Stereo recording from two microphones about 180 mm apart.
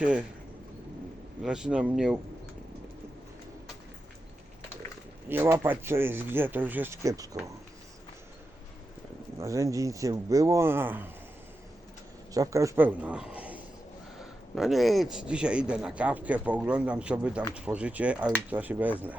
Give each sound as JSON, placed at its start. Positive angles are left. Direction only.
{"t": 0.0, "sound": "speech", "side_deg": -5}
{"t": 1.4, "sound": "speech", "side_deg": -5}
{"t": 5.3, "sound": "speech", "side_deg": -10}
{"t": 9.4, "sound": "speech", "side_deg": -15}
{"t": 12.3, "sound": "speech", "side_deg": -20}